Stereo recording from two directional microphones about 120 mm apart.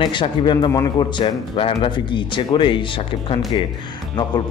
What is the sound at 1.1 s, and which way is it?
A man's voice, 50° left (ahead or behind).